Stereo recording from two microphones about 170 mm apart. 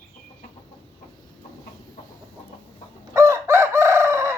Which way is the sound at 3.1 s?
15° right (ahead or behind).